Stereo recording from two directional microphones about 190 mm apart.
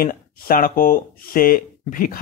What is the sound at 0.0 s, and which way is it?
Speech, 50° left (ahead or behind).